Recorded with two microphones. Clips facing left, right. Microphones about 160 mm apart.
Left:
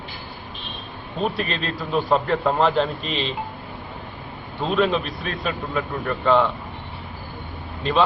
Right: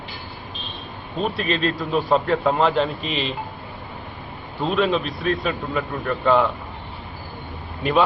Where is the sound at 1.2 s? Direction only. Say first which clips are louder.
Right 2 dB; centre (ahead or behind).